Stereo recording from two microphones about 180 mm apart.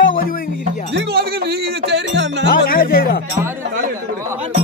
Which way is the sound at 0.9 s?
65° right (ahead or behind).